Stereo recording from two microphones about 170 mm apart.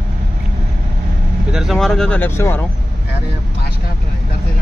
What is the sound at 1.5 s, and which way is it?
Speech, centre (ahead or behind).